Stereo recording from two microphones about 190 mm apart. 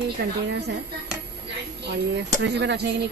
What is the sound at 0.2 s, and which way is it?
Speech, 60° right (ahead or behind).